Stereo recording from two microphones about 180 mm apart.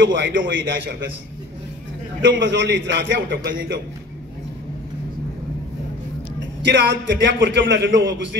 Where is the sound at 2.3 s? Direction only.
90° right.